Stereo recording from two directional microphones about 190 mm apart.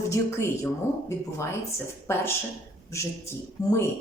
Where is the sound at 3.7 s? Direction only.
15° left (ahead or behind).